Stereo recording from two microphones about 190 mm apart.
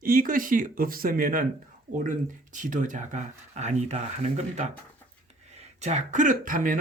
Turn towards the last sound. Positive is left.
turn(degrees=-45)  # may be behind; listen again after turning